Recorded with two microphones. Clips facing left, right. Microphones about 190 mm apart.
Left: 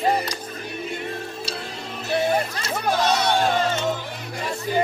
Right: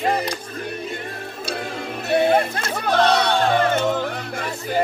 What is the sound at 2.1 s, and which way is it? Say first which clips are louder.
Music: right 4 dB; 55° right (ahead or behind).